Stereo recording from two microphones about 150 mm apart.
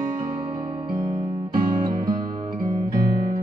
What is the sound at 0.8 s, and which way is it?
Music, 25° right (ahead or behind).